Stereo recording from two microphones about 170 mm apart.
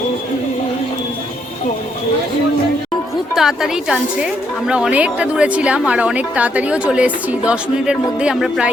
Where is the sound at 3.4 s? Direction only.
5° right (ahead or behind).